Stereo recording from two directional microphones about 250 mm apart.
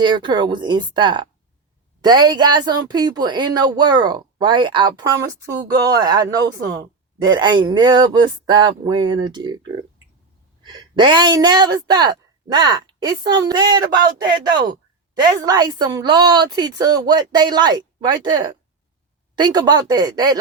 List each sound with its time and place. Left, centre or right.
0.0 s a woman's voice: centre
15.4 s speech: centre